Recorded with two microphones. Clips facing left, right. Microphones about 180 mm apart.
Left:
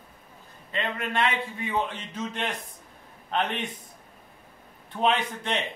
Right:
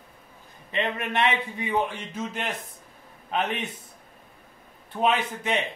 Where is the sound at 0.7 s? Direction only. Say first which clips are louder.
Right 2 dB; 20° right (ahead or behind).